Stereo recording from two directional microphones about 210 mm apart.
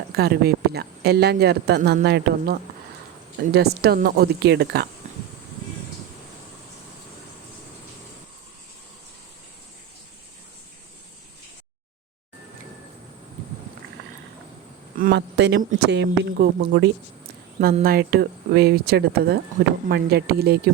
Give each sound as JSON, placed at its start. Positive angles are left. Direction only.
{"t": 0.1, "sound": "speech", "side_deg": -50}
{"t": 14.9, "sound": "speech", "side_deg": -50}